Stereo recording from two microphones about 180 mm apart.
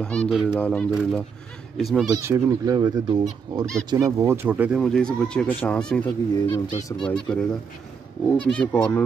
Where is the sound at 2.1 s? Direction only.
15° right (ahead or behind).